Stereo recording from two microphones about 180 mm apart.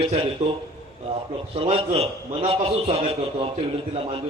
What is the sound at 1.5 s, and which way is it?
A man's voice, 30° right (ahead or behind).